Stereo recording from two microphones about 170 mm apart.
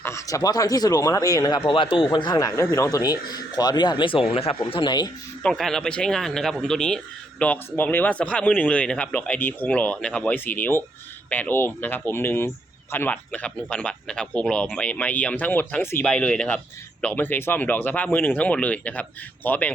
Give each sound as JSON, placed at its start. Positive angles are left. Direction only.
{"t": 0.0, "sound": "speech", "side_deg": 15}
{"t": 5.4, "sound": "speech", "side_deg": 5}